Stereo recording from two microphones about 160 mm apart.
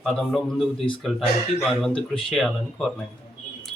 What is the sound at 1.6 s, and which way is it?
Speech, centre (ahead or behind).